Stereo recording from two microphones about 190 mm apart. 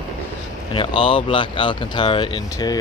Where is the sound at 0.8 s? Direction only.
30° left (ahead or behind).